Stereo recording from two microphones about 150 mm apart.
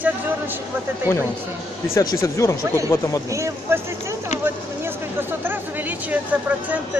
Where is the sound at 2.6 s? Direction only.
20° right (ahead or behind).